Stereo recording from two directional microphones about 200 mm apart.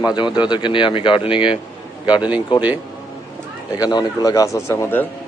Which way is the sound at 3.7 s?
20° left (ahead or behind).